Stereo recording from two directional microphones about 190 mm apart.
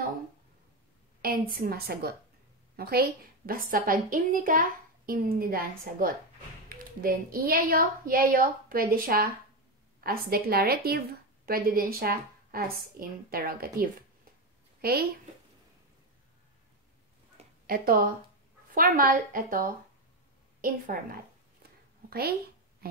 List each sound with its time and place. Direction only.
1.2 s a woman's voice: 50° right (ahead or behind)
17.6 s a woman's voice: 50° right (ahead or behind)